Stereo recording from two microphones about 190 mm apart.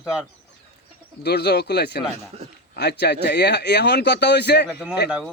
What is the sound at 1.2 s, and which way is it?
Speech, 60° left (ahead or behind).